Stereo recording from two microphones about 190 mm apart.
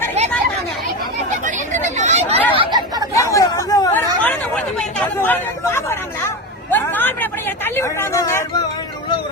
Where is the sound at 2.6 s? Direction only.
20° right (ahead or behind).